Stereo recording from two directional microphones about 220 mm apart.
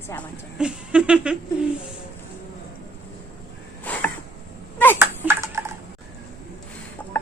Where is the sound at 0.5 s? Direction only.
5° right (ahead or behind).